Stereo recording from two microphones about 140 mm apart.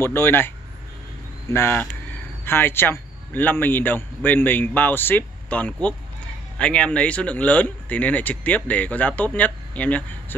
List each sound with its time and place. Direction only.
0.0 s speech: 15° left (ahead or behind)
1.5 s speech: 15° left (ahead or behind)